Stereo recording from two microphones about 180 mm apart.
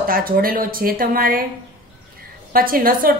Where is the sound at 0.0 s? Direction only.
55° right (ahead or behind).